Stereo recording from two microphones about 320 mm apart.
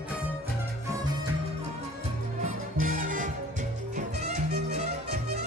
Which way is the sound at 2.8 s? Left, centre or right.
Right.